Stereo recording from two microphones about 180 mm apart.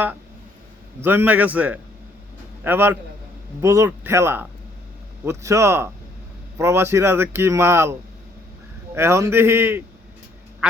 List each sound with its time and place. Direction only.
1.0 s speech: 10° right (ahead or behind)
9.0 s speech: 15° right (ahead or behind)
10.6 s quack: 5° right (ahead or behind)